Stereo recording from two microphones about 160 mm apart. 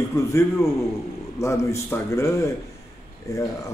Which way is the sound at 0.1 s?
20° left (ahead or behind).